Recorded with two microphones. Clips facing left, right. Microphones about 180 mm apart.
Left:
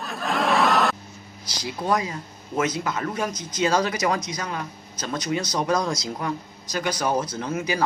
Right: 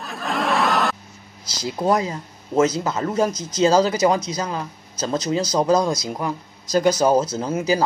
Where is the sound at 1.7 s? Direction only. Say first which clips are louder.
Right 4 dB; 25° right (ahead or behind).